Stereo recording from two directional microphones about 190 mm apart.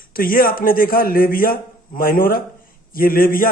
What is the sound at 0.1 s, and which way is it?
A man's voice, 50° left (ahead or behind).